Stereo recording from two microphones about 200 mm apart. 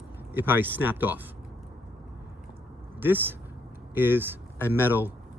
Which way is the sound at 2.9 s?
10° right (ahead or behind).